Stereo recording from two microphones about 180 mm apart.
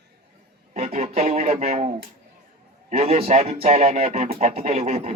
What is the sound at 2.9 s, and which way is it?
Speech, 35° right (ahead or behind).